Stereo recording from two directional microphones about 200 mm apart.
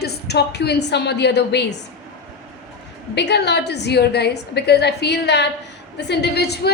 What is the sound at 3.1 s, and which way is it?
A woman's voice, 55° left (ahead or behind).